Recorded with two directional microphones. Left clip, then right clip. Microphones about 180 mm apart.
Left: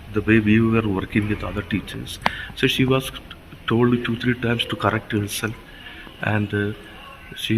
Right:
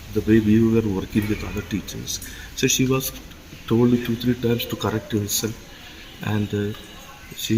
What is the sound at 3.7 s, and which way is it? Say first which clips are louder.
Speech: even; 15° left (ahead or behind).